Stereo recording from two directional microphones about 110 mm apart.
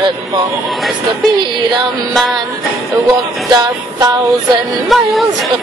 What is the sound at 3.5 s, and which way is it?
Music, 35° right (ahead or behind).